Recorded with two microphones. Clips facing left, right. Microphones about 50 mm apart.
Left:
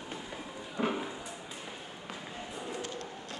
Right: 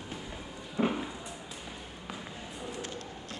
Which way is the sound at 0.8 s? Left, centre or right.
Centre.